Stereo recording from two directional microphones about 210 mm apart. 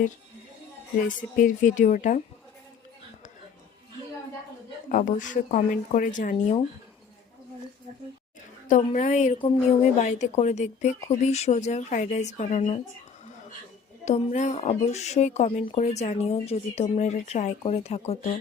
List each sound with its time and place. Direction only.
1.0 s speech: 40° left (ahead or behind)
4.9 s speech: 40° left (ahead or behind)
8.6 s speech: 35° left (ahead or behind)
14.0 s speech: 35° left (ahead or behind)